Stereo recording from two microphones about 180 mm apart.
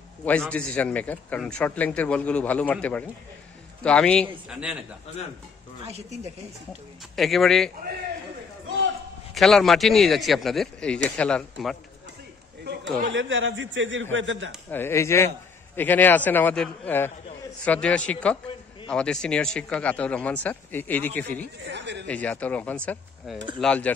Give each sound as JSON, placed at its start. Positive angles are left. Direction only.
{"t": 0.2, "sound": "a man's voice", "side_deg": 5}
{"t": 4.3, "sound": "speech", "side_deg": -5}
{"t": 5.9, "sound": "speech", "side_deg": -35}
{"t": 7.2, "sound": "speech", "side_deg": 0}
{"t": 9.3, "sound": "speech", "side_deg": 0}
{"t": 13.1, "sound": "a man's voice", "side_deg": -90}
{"t": 14.7, "sound": "a man's voice", "side_deg": 15}
{"t": 21.6, "sound": "speech", "side_deg": -75}
{"t": 22.0, "sound": "a man's voice", "side_deg": 5}